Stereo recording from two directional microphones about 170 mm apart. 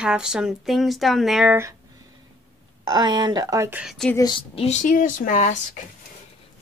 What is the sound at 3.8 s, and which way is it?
Speech, centre (ahead or behind).